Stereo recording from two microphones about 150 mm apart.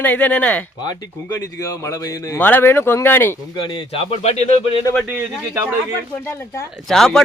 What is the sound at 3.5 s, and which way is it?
A man's voice, 30° left (ahead or behind).